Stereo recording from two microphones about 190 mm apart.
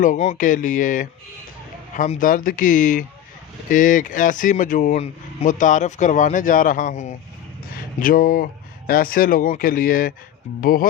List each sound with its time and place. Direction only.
0.0 s speech: 40° left (ahead or behind)